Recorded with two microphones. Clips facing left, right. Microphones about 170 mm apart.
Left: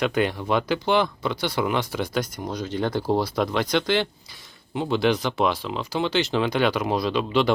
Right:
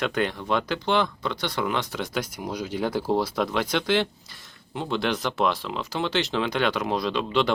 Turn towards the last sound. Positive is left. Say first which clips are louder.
# left 2 dB
turn(degrees=5)  # may be behind; listen again after turning